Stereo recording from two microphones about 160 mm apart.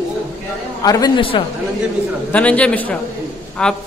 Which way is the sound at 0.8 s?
25° left (ahead or behind).